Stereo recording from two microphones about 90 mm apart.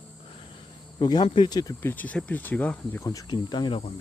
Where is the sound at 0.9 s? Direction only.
55° left (ahead or behind).